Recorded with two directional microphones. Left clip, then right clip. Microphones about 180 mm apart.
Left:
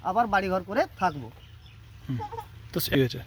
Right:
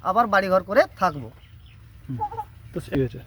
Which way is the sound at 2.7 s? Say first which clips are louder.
Left 1 dB; 20° left (ahead or behind).